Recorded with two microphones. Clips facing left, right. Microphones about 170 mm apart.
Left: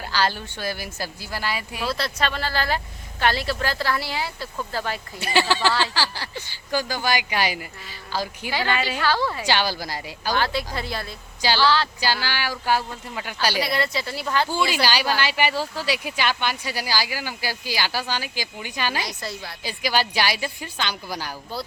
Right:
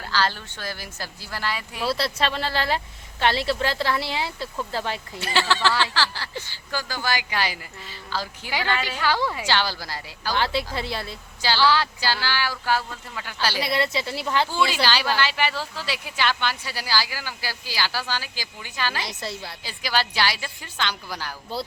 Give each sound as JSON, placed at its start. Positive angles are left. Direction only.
{"t": 0.0, "sound": "speech", "side_deg": 15}
{"t": 1.8, "sound": "speech", "side_deg": -30}
{"t": 5.2, "sound": "speech", "side_deg": 15}
{"t": 9.0, "sound": "a woman's voice", "side_deg": -15}
{"t": 9.5, "sound": "speech", "side_deg": 15}
{"t": 10.3, "sound": "speech", "side_deg": -25}
{"t": 11.6, "sound": "a woman's voice", "side_deg": -10}
{"t": 11.9, "sound": "speech", "side_deg": 15}
{"t": 13.6, "sound": "speech", "side_deg": -25}
{"t": 14.5, "sound": "speech", "side_deg": 15}
{"t": 19.0, "sound": "speech", "side_deg": -25}
{"t": 19.6, "sound": "speech", "side_deg": 15}